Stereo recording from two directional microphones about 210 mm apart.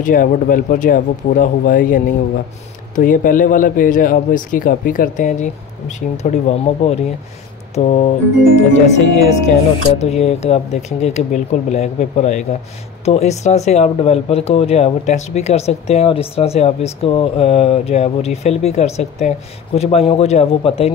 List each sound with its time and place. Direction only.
0.0 s a man's voice: 40° left (ahead or behind)